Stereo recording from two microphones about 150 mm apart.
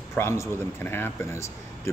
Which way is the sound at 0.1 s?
15° left (ahead or behind).